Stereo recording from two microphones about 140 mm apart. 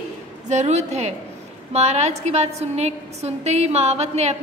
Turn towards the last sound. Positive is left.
turn(degrees=-50)  # may be behind; listen again after turning